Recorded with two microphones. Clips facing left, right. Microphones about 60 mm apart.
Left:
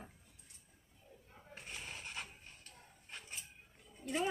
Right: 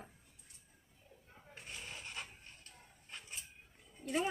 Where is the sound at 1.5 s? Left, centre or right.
Centre.